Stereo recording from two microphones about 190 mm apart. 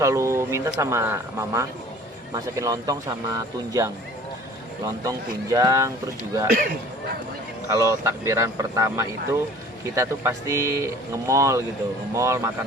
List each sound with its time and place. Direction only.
0.0 s speech: 15° right (ahead or behind)
5.0 s speech: 15° right (ahead or behind)
7.7 s speech: 15° right (ahead or behind)